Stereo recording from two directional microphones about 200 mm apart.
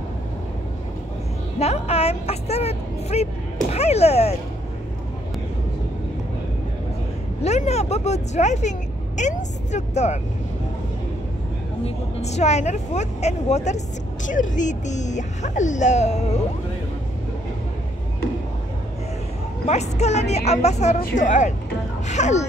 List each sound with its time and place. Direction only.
1.6 s vehicle: 30° left (ahead or behind)
3.7 s speech: 30° left (ahead or behind)
7.4 s speech: 35° left (ahead or behind)
11.8 s speech: 35° left (ahead or behind)
19.7 s speech: 35° left (ahead or behind)